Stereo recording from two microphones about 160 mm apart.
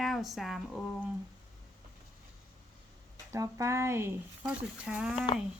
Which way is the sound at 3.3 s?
20° right (ahead or behind).